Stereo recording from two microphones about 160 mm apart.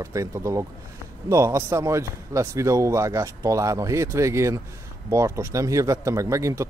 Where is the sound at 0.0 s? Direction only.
20° right (ahead or behind).